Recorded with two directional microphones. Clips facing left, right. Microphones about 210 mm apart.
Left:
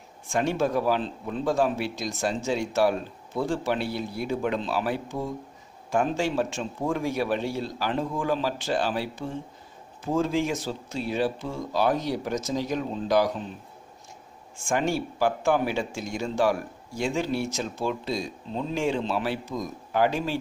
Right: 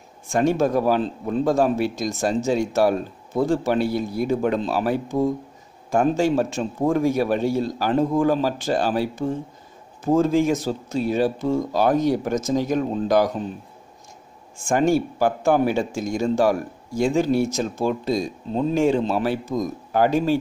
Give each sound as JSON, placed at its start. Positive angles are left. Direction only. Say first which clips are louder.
{"t": 0.3, "sound": "speech", "louder": "right 5 dB", "side_deg": -45}
{"t": 14.7, "sound": "speech", "louder": "right 7 dB", "side_deg": -45}